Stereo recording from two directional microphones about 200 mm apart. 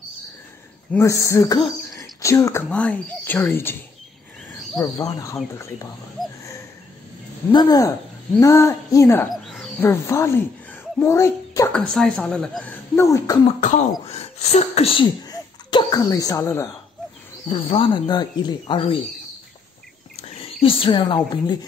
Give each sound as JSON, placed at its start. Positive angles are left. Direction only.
{"t": 0.9, "sound": "speech", "side_deg": 15}
{"t": 4.7, "sound": "speech", "side_deg": 20}
{"t": 7.5, "sound": "speech", "side_deg": 20}
{"t": 9.3, "sound": "speech", "side_deg": 0}
{"t": 13.6, "sound": "speech", "side_deg": 40}
{"t": 17.5, "sound": "speech", "side_deg": 25}
{"t": 20.2, "sound": "speech", "side_deg": 30}